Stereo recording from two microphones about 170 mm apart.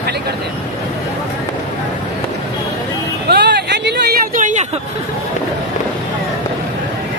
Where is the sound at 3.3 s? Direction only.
80° right; by 4.7 s 50° right (ahead or behind).